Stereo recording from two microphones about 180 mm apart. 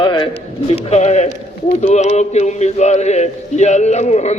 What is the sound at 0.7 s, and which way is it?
A man's voice, 35° left (ahead or behind).